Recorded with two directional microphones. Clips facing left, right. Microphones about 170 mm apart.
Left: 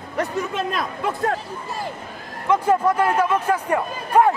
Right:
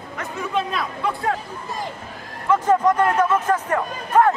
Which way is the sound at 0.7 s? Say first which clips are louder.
Even; 45° left (ahead or behind).